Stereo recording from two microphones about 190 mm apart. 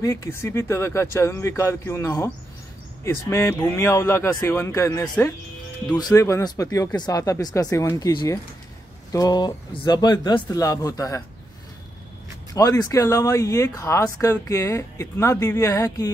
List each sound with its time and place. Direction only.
0.0 s speech: 15° left (ahead or behind)
12.5 s speech: 20° left (ahead or behind)